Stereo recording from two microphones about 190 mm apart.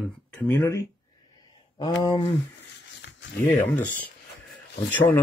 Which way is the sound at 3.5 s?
10° left (ahead or behind).